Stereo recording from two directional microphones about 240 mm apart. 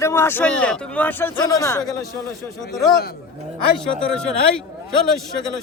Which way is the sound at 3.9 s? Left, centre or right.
Centre.